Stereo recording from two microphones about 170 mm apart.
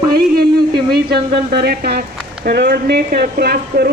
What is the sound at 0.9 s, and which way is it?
Speech, 70° right (ahead or behind).